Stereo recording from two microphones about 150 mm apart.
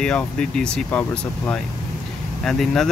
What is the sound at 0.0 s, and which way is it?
Speech, 5° left (ahead or behind).